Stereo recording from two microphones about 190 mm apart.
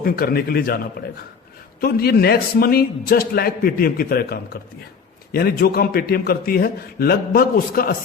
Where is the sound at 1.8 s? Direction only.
55° left (ahead or behind).